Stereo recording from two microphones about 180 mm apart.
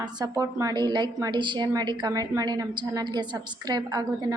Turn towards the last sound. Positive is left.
turn(degrees=-20)  # may be behind; listen again after turning